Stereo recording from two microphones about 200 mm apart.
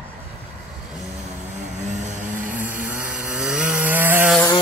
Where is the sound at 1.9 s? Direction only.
40° right (ahead or behind).